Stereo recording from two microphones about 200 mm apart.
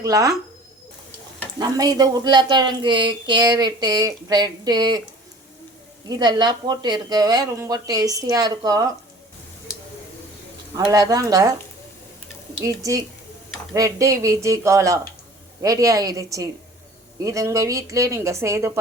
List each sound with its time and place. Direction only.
0.0 s speech: 15° right (ahead or behind)
1.5 s speech: 20° right (ahead or behind)
6.1 s speech: 20° right (ahead or behind)
10.8 s speech: 20° right (ahead or behind)
12.6 s speech: 15° right (ahead or behind)